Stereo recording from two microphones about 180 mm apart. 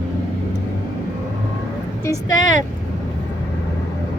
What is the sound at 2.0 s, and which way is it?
Speech, 20° left (ahead or behind).